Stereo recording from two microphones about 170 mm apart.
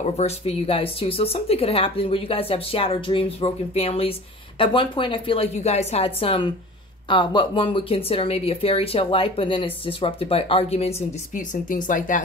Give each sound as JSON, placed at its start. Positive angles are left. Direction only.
{"t": 0.0, "sound": "speech", "side_deg": 40}